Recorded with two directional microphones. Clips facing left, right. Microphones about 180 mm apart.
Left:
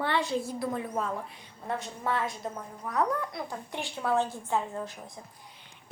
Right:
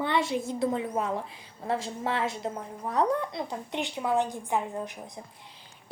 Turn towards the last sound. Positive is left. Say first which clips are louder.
# right 2 dB
turn(degrees=-20)  # may be behind; listen again after turning